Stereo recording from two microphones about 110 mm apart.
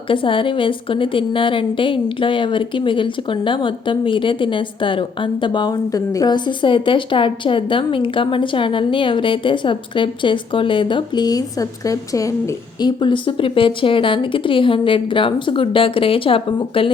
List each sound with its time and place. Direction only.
0.1 s speech: 50° left (ahead or behind); by 12.3 s 30° left (ahead or behind)
12.8 s speech: 45° left (ahead or behind)